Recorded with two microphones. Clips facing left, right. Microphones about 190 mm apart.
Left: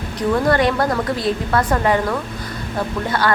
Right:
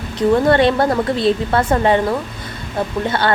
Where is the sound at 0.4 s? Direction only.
25° right (ahead or behind).